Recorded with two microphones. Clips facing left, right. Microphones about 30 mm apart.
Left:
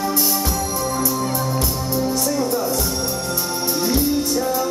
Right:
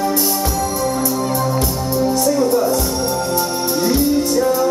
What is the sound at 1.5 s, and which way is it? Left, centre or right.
Music, centre.